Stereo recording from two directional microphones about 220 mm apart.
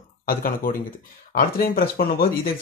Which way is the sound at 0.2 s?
40° left (ahead or behind).